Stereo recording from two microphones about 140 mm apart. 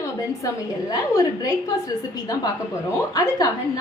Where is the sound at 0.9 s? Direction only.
25° left (ahead or behind).